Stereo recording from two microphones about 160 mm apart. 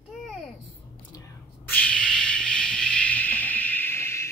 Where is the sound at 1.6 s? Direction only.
10° left (ahead or behind).